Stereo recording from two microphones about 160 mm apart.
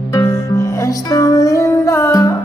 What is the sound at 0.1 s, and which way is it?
Music, 15° left (ahead or behind).